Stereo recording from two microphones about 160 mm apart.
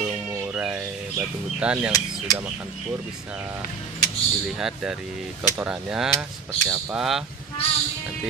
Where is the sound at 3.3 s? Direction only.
10° right (ahead or behind).